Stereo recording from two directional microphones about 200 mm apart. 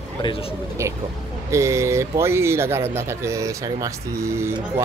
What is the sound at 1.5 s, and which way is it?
Speech, 15° right (ahead or behind).